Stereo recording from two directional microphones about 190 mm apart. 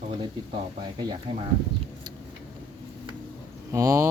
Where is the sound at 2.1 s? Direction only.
25° right (ahead or behind).